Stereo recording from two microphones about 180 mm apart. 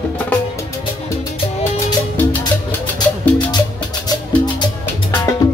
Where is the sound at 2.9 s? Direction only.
25° left (ahead or behind).